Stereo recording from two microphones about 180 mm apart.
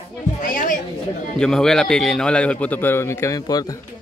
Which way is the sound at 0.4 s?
45° left (ahead or behind).